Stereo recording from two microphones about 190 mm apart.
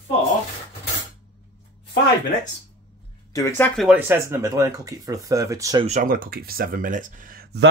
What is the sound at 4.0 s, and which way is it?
Speech, 10° right (ahead or behind).